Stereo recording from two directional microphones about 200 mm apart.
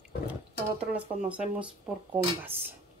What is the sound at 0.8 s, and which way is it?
Speech, 5° right (ahead or behind).